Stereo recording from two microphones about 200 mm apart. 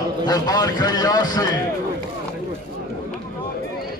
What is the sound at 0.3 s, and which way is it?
A man's voice, 20° left (ahead or behind).